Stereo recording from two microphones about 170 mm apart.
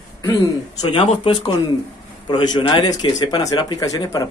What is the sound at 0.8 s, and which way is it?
Speech, 30° left (ahead or behind).